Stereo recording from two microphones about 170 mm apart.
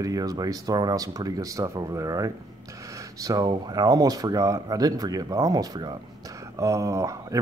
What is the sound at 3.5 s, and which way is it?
Speech, 25° right (ahead or behind).